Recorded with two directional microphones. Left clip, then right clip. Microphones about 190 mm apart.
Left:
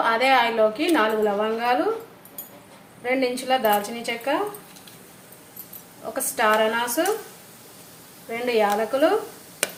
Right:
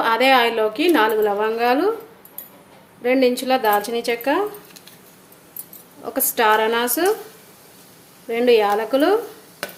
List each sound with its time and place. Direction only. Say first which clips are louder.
0.0 s a woman's voice: right 3 dB; 55° right (ahead or behind)
3.0 s a woman's voice: right 6 dB; 55° right (ahead or behind)
6.1 s a woman's voice: right 3 dB; 55° right (ahead or behind)
8.3 s a woman's voice: right 6 dB; 55° right (ahead or behind)